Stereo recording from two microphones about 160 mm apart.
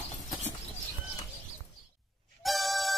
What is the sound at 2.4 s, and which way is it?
Music, centre (ahead or behind).